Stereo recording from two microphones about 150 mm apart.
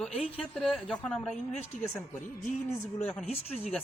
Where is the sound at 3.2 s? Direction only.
45° left (ahead or behind).